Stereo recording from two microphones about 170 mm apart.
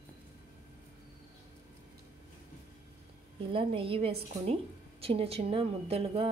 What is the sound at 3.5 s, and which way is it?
A woman's voice, 30° right (ahead or behind).